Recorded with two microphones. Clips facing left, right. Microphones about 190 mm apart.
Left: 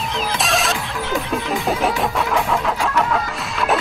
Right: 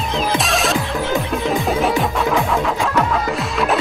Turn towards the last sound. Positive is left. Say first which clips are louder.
# right 2 dB
turn(degrees=0)  # may be behind; listen again after turning